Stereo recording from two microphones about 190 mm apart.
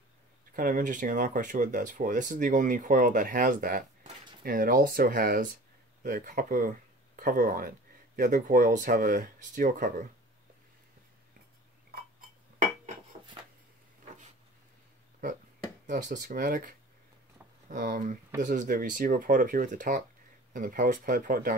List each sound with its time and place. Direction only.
0.6 s speech: 45° right (ahead or behind)
15.9 s speech: 45° right (ahead or behind)